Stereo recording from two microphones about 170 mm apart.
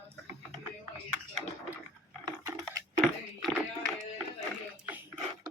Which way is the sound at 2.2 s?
20° right (ahead or behind).